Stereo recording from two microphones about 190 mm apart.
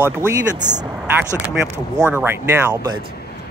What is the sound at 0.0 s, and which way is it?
Speech, 10° right (ahead or behind).